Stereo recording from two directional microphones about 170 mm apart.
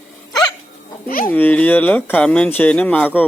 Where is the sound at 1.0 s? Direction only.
55° left (ahead or behind).